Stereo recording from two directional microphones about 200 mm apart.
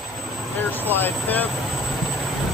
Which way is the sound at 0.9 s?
10° left (ahead or behind).